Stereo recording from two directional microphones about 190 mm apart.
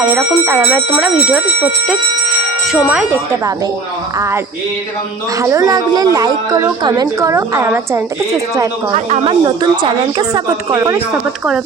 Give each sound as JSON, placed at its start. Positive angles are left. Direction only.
{"t": 0.0, "sound": "a woman's voice", "side_deg": -10}
{"t": 5.4, "sound": "a woman's voice", "side_deg": -15}
{"t": 9.0, "sound": "speech", "side_deg": -35}
{"t": 9.6, "sound": "speech", "side_deg": -20}